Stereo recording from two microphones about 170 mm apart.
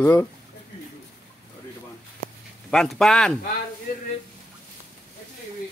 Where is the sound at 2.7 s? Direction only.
Centre (ahead or behind).